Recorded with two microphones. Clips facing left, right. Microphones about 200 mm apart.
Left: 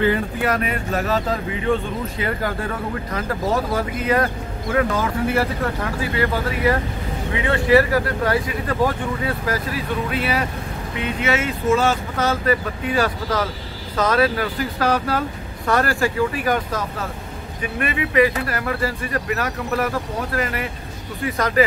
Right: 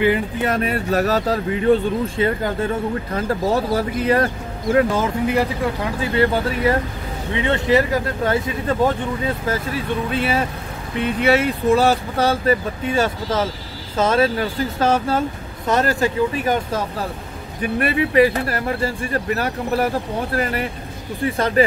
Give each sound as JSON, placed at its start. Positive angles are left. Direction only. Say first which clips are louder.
{"t": 0.0, "sound": "speech", "louder": "right 1 dB", "side_deg": -15}
{"t": 0.5, "sound": "speech", "louder": "right 3 dB", "side_deg": -35}
{"t": 2.1, "sound": "speech", "louder": "right 4 dB", "side_deg": -25}
{"t": 6.1, "sound": "speech", "louder": "right 5 dB", "side_deg": -30}
{"t": 21.3, "sound": "speech", "louder": "right 1 dB", "side_deg": -30}